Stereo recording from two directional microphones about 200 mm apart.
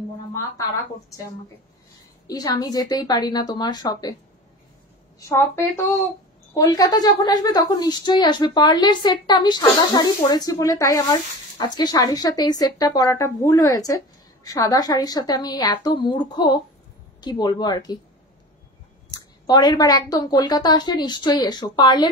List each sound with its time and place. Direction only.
2.2 s a woman's voice: 20° left (ahead or behind)
6.5 s a woman's voice: 20° left (ahead or behind)
19.4 s a woman's voice: 20° left (ahead or behind)